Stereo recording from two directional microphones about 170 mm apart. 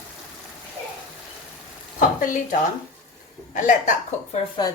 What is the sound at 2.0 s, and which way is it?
A woman's voice, 55° left (ahead or behind).